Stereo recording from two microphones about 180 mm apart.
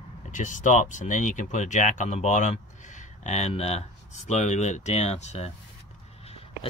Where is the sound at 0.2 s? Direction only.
45° left (ahead or behind).